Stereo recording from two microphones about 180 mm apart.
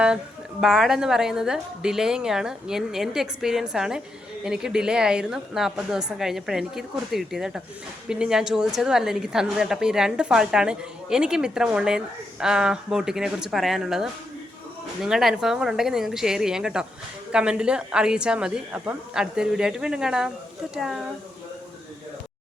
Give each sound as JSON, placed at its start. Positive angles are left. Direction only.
{"t": 0.6, "sound": "a woman's voice", "side_deg": 0}